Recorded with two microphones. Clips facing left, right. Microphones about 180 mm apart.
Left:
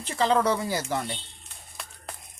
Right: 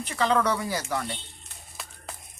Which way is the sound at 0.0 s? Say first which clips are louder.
Left 1 dB; 30° left (ahead or behind).